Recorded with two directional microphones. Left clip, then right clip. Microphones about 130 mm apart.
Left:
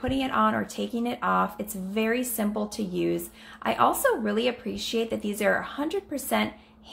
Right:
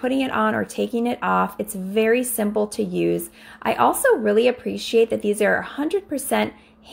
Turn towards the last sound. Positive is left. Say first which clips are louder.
# right 5 dB
turn(degrees=-40)  # may be behind; listen again after turning